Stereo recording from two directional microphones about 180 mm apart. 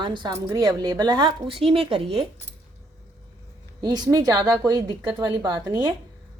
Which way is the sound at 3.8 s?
20° right (ahead or behind).